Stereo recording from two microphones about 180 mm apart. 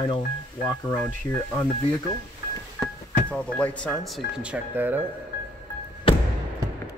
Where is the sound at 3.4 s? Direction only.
5° left (ahead or behind).